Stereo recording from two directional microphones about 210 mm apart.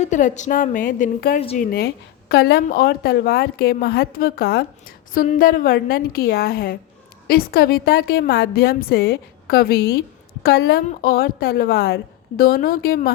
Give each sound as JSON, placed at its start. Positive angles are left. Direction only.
{"t": 0.0, "sound": "a woman's voice", "side_deg": 35}
{"t": 1.4, "sound": "speech", "side_deg": 30}
{"t": 2.3, "sound": "a woman's voice", "side_deg": 50}